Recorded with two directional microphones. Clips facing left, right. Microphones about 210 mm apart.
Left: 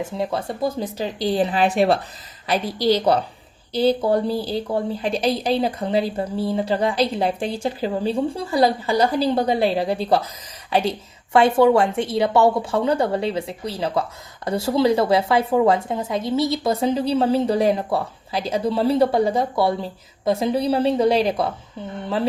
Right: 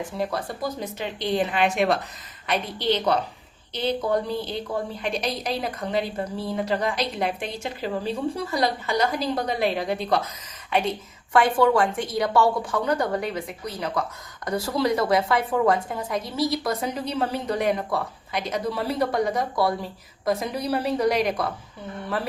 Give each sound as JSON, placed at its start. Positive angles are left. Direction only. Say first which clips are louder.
{"t": 0.2, "sound": "a woman's voice", "louder": "left 4 dB", "side_deg": 25}